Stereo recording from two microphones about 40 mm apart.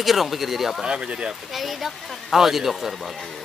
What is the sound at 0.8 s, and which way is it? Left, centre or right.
Speech, right.